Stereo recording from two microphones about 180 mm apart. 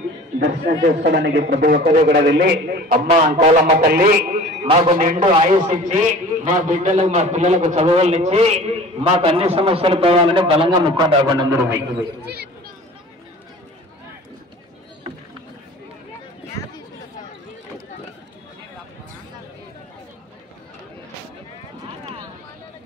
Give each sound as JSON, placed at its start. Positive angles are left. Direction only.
{"t": 0.4, "sound": "a man's voice", "side_deg": -65}
{"t": 2.0, "sound": "a man's voice", "side_deg": -60}
{"t": 3.1, "sound": "a man's voice", "side_deg": -30}
{"t": 3.8, "sound": "a man's voice", "side_deg": -55}
{"t": 4.6, "sound": "a man's voice", "side_deg": -30}
{"t": 4.9, "sound": "a man's voice", "side_deg": -45}
{"t": 5.2, "sound": "a man's voice", "side_deg": -35}